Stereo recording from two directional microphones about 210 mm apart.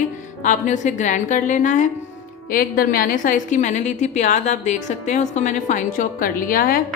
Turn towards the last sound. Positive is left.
turn(degrees=40)  # may be behind; listen again after turning